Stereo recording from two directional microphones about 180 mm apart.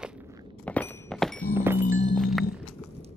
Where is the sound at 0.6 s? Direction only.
10° left (ahead or behind).